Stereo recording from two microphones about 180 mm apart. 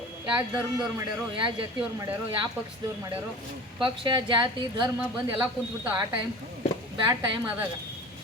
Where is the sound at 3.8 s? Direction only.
25° right (ahead or behind).